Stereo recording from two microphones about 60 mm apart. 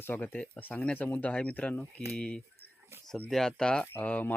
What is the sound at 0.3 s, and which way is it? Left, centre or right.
Speech, left.